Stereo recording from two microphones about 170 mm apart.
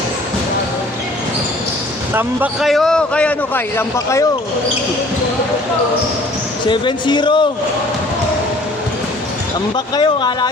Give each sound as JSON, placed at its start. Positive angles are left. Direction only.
{"t": 2.1, "sound": "a man's voice", "side_deg": -5}
{"t": 6.7, "sound": "speech", "side_deg": 25}
{"t": 9.7, "sound": "speech", "side_deg": 25}